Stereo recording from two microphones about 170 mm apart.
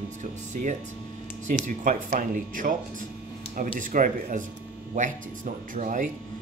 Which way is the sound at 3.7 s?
50° right (ahead or behind).